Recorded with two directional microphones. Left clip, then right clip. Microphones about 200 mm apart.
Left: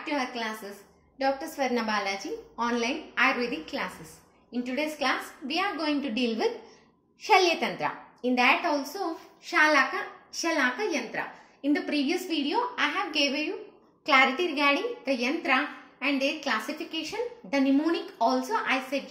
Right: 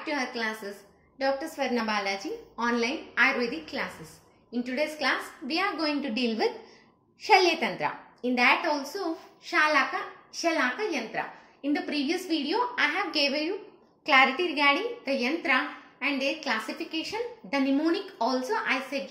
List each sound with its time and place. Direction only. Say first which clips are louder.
0.0 s a woman's voice: even; 10° right (ahead or behind)
14.0 s a woman's voice: right 1 dB; 5° left (ahead or behind)